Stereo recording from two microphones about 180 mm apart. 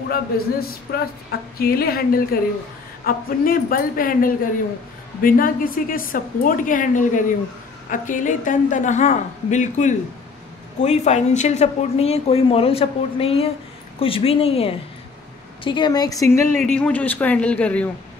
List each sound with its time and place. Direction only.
0.1 s a man's voice: 55° left (ahead or behind); by 16.4 s 15° left (ahead or behind)
16.6 s speech: 5° left (ahead or behind)